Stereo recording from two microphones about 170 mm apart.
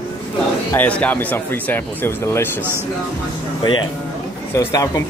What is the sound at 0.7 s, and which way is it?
Speech, 10° left (ahead or behind).